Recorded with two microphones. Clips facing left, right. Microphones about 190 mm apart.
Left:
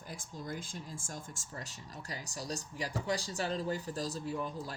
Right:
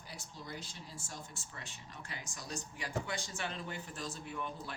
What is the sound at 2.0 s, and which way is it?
Speech, 35° left (ahead or behind).